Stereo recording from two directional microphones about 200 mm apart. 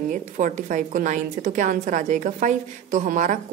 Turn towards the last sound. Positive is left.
turn(degrees=-40)  # may be behind; listen again after turning